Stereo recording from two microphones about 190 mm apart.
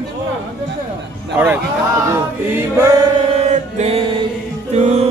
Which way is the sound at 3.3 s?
35° right (ahead or behind).